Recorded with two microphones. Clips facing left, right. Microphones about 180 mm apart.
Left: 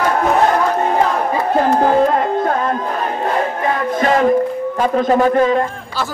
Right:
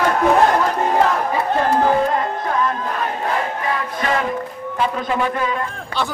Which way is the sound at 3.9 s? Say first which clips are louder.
Left 7 dB; 40° left (ahead or behind).